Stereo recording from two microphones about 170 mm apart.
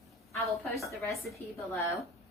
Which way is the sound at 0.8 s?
15° left (ahead or behind).